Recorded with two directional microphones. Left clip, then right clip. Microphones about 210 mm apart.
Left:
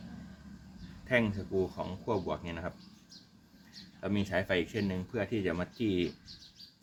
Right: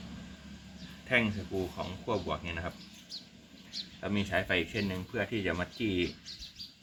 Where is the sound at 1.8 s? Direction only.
50° left (ahead or behind).